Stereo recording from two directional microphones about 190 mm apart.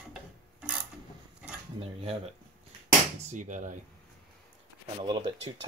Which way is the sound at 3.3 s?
40° right (ahead or behind).